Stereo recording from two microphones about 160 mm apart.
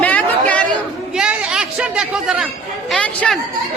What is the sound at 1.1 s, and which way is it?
Speech, 5° right (ahead or behind).